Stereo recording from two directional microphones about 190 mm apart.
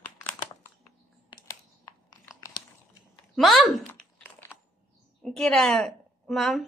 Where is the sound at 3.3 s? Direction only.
Centre (ahead or behind).